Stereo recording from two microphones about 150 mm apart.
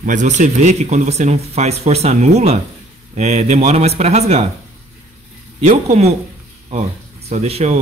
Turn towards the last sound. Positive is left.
turn(degrees=-45)  # may be behind; listen again after turning